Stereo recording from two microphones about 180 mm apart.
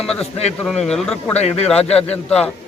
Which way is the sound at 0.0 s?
5° left (ahead or behind).